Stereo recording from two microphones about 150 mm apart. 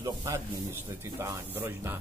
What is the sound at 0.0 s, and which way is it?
Speech, 20° right (ahead or behind).